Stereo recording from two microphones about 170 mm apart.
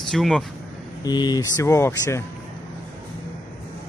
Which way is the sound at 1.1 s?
25° left (ahead or behind).